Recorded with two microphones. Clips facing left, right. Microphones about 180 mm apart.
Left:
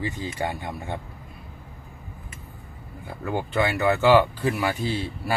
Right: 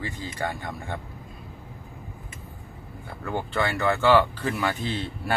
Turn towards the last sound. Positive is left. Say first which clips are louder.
# left 2 dB
turn(degrees=5)  # may be behind; listen again after turning